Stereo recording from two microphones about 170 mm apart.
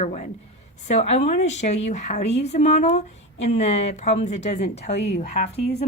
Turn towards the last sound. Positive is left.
turn(degrees=40)  # may be behind; listen again after turning